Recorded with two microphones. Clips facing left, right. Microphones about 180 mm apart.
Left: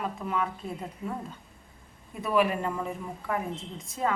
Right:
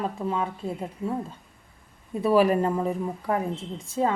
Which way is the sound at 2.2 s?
35° right (ahead or behind).